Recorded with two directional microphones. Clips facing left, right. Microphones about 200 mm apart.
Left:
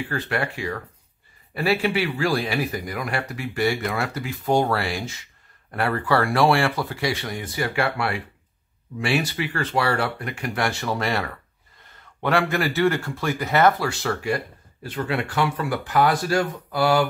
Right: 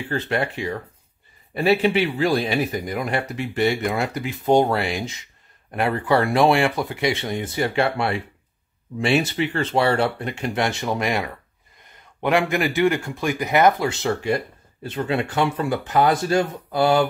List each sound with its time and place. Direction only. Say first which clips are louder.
0.1 s speech: right 6 dB; 20° right (ahead or behind)